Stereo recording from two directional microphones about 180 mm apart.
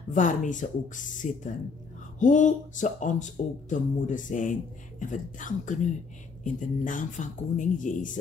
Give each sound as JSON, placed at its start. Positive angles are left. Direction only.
{"t": 0.1, "sound": "speech", "side_deg": 45}